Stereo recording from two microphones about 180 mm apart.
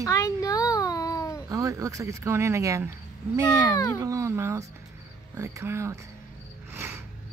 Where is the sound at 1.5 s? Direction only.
20° right (ahead or behind).